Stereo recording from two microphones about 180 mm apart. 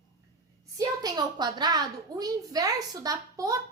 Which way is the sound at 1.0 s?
20° right (ahead or behind).